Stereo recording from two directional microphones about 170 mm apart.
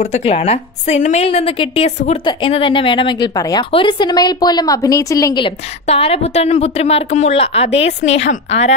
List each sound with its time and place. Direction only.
0.0 s a woman's voice: 40° left (ahead or behind)
2.2 s a woman's voice: 30° left (ahead or behind)
5.9 s a woman's voice: 35° left (ahead or behind)